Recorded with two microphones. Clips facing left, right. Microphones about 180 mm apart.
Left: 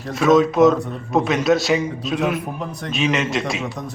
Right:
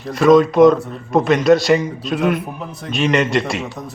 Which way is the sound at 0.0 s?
Centre (ahead or behind).